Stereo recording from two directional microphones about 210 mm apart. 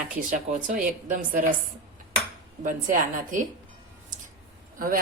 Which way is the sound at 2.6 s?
40° right (ahead or behind).